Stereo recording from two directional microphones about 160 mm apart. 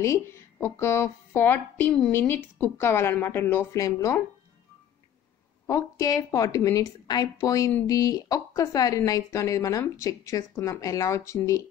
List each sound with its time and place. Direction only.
0.0 s a woman's voice: 15° left (ahead or behind)
5.7 s speech: 20° left (ahead or behind)